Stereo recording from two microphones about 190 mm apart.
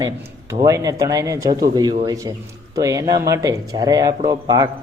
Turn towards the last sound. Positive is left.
turn(degrees=-20)  # may be behind; listen again after turning